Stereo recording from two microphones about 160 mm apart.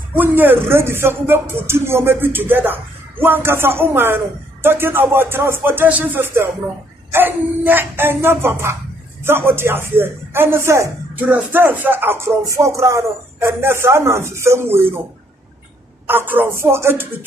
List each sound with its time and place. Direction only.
0.1 s speech: 10° right (ahead or behind)
16.1 s speech: 15° right (ahead or behind)